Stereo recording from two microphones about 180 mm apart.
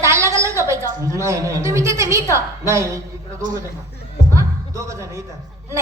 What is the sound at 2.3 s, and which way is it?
Speech, 15° right (ahead or behind).